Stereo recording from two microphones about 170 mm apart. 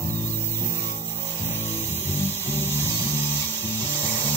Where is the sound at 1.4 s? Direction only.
15° left (ahead or behind).